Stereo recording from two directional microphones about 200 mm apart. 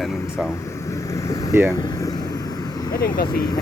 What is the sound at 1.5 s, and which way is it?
Speech, 10° right (ahead or behind).